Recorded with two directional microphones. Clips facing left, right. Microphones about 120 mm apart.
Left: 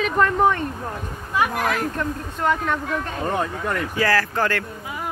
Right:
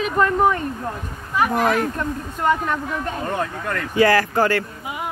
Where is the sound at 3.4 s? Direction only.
15° left (ahead or behind).